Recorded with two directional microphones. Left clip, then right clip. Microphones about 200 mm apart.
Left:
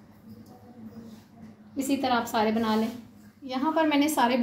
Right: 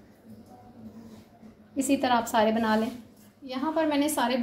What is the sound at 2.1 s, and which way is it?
Speech, 25° right (ahead or behind).